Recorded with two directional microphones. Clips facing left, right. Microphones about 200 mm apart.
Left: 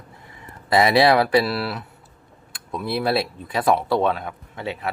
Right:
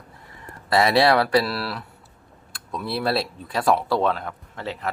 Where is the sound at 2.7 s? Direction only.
5° left (ahead or behind).